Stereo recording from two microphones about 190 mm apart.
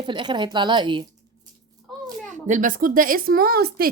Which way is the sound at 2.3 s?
40° right (ahead or behind).